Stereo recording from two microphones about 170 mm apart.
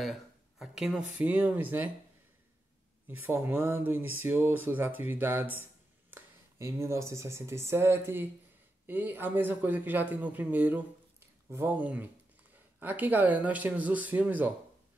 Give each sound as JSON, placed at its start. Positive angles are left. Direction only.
{"t": 0.0, "sound": "speech", "side_deg": 0}
{"t": 3.1, "sound": "speech", "side_deg": -10}